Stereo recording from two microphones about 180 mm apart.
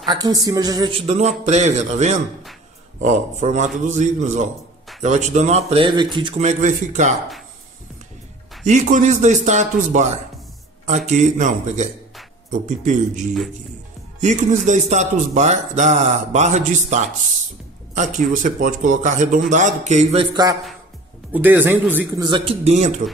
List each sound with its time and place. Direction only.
0.0 s speech: 20° right (ahead or behind)
6.4 s speech: 40° right (ahead or behind)
8.6 s speech: 40° right (ahead or behind)
11.1 s a man's voice: 40° right (ahead or behind)
14.2 s a man's voice: 40° right (ahead or behind)
21.3 s a man's voice: 10° right (ahead or behind)
22.2 s speech: 30° right (ahead or behind)